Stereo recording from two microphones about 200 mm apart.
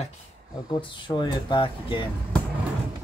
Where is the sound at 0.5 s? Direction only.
20° left (ahead or behind).